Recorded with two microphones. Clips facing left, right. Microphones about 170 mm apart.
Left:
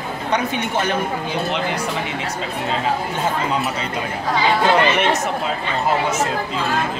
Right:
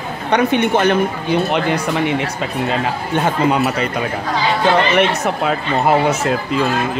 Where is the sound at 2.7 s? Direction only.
65° right (ahead or behind).